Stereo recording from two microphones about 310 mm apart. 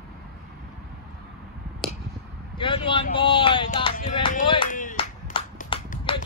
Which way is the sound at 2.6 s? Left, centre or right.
Centre.